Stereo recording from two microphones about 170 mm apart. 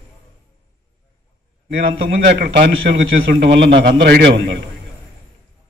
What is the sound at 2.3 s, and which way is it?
A man's voice, 75° right (ahead or behind).